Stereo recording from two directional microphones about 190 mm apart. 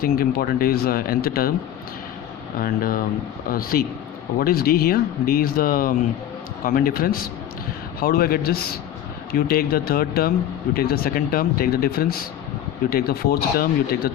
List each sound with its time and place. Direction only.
0.0 s speech: 50° left (ahead or behind)
2.6 s speech: 50° left (ahead or behind)